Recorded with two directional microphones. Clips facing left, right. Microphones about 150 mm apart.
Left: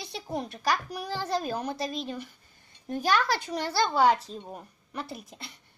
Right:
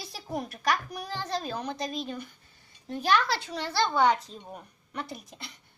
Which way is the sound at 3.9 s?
35° left (ahead or behind).